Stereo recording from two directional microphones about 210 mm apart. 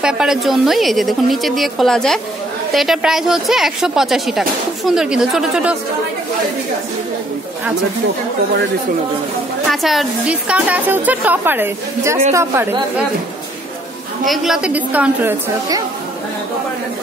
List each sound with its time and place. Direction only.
0.0 s a woman's voice: centre (ahead or behind)
9.7 s a woman's voice: centre (ahead or behind)
14.2 s a woman's voice: centre (ahead or behind)